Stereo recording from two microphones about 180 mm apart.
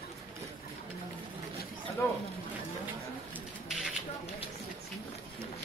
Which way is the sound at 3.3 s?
5° right (ahead or behind).